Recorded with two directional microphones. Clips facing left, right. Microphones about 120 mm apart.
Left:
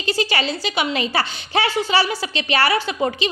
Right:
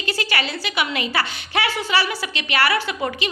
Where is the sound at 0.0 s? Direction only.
25° left (ahead or behind).